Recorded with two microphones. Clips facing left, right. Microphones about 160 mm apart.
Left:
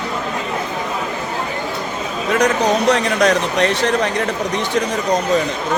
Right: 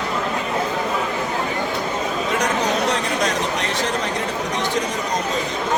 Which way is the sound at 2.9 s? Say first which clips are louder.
Left 6 dB; 70° left (ahead or behind).